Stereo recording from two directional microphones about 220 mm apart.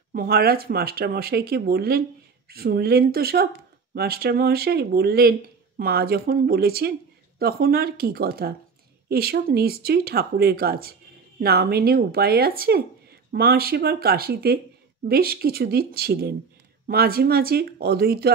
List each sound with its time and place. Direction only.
0.1 s speech: 45° right (ahead or behind)